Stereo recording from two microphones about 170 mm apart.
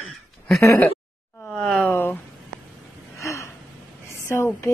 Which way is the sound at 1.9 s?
10° left (ahead or behind).